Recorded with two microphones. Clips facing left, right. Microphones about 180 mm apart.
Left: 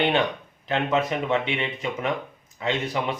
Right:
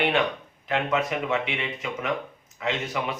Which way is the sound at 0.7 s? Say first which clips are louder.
Left 2 dB; 25° left (ahead or behind).